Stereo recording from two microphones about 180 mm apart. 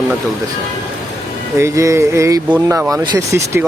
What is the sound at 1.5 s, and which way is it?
Speech, 15° right (ahead or behind).